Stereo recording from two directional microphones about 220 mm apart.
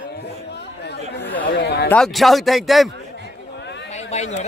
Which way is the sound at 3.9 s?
30° left (ahead or behind).